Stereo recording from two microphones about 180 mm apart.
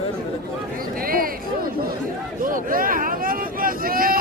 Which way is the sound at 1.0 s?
55° right (ahead or behind).